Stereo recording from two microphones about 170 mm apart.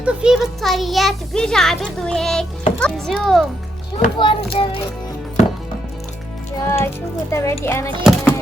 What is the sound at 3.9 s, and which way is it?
Speech, 30° left (ahead or behind).